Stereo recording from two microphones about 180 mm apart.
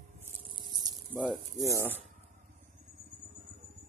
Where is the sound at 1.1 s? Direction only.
Centre (ahead or behind).